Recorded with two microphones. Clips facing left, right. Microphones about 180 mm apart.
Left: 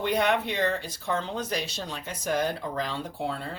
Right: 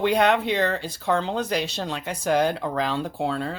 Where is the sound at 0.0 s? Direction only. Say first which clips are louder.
Right 5 dB; 90° right.